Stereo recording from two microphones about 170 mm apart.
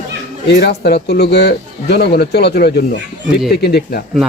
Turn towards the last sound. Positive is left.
turn(degrees=70)  # may be behind; listen again after turning